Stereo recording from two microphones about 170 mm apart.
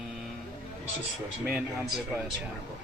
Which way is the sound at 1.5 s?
5° right (ahead or behind).